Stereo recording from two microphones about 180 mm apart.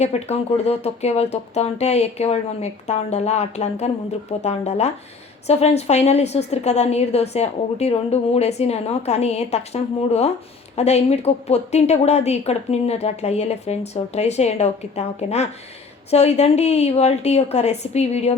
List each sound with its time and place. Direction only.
0.0 s a woman's voice: 35° left (ahead or behind)